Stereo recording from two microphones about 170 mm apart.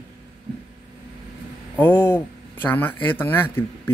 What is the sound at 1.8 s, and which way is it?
Speech, 10° left (ahead or behind).